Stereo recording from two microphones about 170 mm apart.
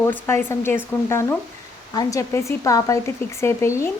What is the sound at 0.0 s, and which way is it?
A woman's voice, 10° left (ahead or behind).